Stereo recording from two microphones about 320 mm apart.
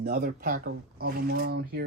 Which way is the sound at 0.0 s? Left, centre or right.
Right.